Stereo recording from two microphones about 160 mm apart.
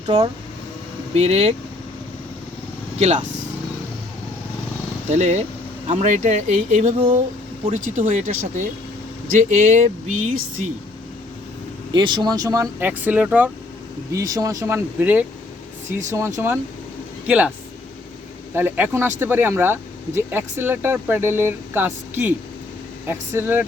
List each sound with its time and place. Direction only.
1.1 s speech: 40° right (ahead or behind)
5.1 s speech: 40° right (ahead or behind)
11.9 s speech: 30° right (ahead or behind); by 13.5 s 10° right (ahead or behind)
14.1 s speech: 20° right (ahead or behind)
18.5 s speech: 15° right (ahead or behind)